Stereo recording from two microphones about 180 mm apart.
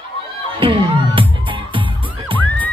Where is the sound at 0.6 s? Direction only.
30° right (ahead or behind).